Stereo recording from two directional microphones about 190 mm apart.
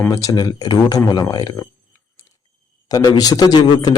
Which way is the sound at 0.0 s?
15° left (ahead or behind).